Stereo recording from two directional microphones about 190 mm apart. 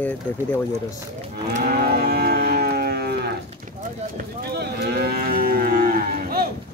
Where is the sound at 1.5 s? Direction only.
55° right (ahead or behind).